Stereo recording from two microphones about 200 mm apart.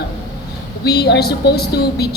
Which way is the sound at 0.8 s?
55° left (ahead or behind).